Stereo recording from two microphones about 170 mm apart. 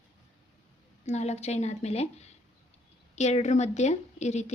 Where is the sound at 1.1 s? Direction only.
40° left (ahead or behind).